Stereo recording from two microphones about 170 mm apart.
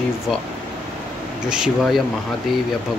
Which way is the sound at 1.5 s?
5° right (ahead or behind).